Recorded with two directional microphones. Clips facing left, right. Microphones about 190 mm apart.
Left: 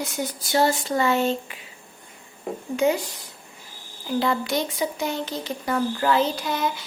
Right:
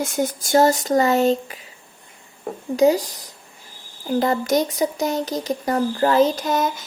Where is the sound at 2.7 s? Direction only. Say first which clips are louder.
Right 6 dB; 35° right (ahead or behind).